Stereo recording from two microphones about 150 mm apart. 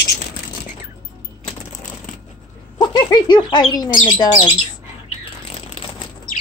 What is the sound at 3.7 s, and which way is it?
Speech, 30° left (ahead or behind).